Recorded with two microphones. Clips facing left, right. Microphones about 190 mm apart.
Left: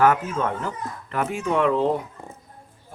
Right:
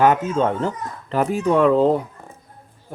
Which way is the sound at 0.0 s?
25° right (ahead or behind).